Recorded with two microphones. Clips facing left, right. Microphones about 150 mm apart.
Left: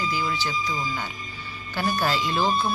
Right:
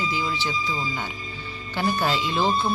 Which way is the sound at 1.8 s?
20° right (ahead or behind).